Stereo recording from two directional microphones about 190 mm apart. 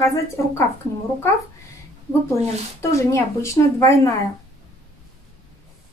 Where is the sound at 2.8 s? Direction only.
15° left (ahead or behind).